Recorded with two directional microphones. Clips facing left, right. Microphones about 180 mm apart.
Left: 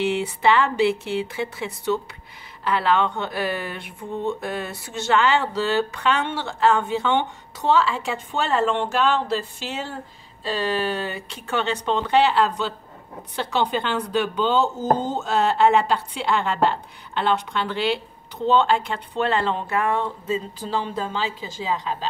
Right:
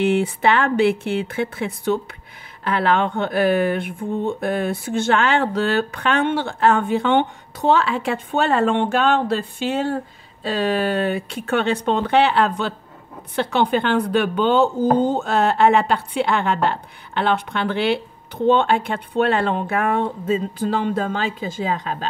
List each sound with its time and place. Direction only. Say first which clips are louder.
0.0 s speech: right 3 dB; 55° right (ahead or behind)
11.1 s speech: right 8 dB; 55° right (ahead or behind)